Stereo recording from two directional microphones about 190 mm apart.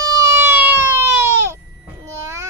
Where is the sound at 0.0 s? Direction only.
15° right (ahead or behind).